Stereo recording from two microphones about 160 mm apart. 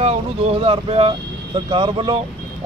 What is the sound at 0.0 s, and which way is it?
Speech, 40° right (ahead or behind).